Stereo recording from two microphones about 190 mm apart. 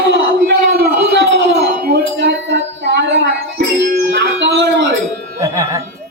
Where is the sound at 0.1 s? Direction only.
65° right (ahead or behind).